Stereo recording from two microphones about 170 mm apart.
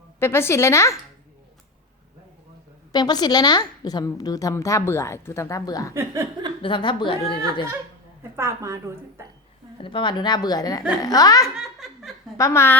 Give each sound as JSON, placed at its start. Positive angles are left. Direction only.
{"t": 0.2, "sound": "a woman's voice", "side_deg": 15}
{"t": 2.9, "sound": "a woman's voice", "side_deg": 25}
{"t": 5.9, "sound": "a woman's voice", "side_deg": -15}
{"t": 6.6, "sound": "a woman's voice", "side_deg": 30}
{"t": 8.4, "sound": "a woman's voice", "side_deg": -15}
{"t": 9.8, "sound": "a woman's voice", "side_deg": 30}
{"t": 11.5, "sound": "laughter", "side_deg": 0}
{"t": 12.4, "sound": "a woman's voice", "side_deg": 15}